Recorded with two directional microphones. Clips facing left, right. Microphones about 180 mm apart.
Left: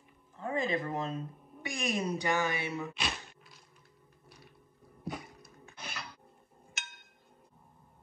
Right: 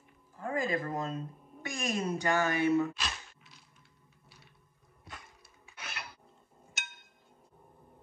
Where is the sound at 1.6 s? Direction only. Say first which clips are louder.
Even; 15° left (ahead or behind).